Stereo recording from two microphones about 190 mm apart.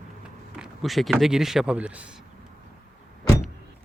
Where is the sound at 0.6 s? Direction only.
Centre (ahead or behind).